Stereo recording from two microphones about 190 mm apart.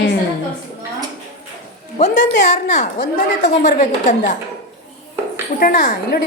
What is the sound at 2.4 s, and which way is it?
A woman's voice, 40° left (ahead or behind).